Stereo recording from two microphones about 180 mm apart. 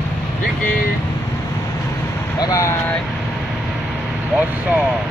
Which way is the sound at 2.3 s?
20° left (ahead or behind).